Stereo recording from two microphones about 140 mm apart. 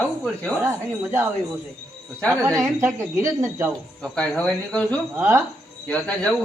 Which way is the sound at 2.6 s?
20° right (ahead or behind).